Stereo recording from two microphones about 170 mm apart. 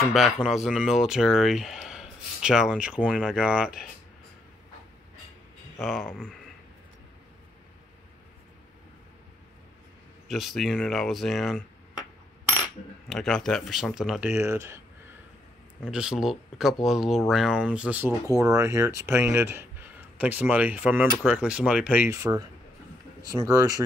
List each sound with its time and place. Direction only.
0.0 s speech: centre (ahead or behind)
5.8 s speech: centre (ahead or behind)
10.2 s speech: centre (ahead or behind)
13.1 s speech: centre (ahead or behind)
14.3 s speech: 15° right (ahead or behind)
15.8 s speech: 5° right (ahead or behind)